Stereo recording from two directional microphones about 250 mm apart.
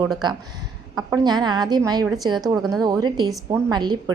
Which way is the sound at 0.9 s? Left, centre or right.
Centre.